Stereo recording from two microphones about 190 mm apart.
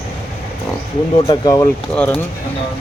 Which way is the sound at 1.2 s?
20° left (ahead or behind).